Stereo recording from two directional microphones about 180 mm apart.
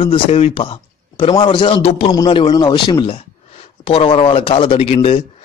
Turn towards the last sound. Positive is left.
turn(degrees=30)  # may be behind; listen again after turning